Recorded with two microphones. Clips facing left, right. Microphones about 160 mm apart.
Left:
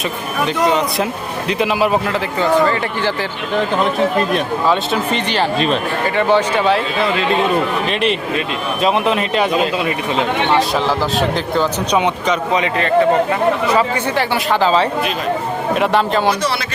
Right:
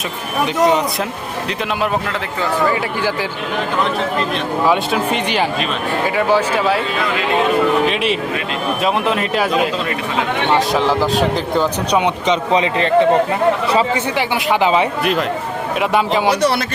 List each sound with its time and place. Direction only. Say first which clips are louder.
2.4 s speech: left 3 dB; 10° right (ahead or behind)
4.7 s speech: even; 10° right (ahead or behind)
8.8 s speech: left 3 dB; centre (ahead or behind)
10.5 s speech: right 3 dB; 15° right (ahead or behind)
12.3 s a man's voice: right 4 dB; 25° right (ahead or behind); by 16.3 s 10° right (ahead or behind)